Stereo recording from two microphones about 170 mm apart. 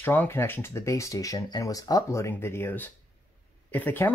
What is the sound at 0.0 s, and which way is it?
Speech, 10° left (ahead or behind).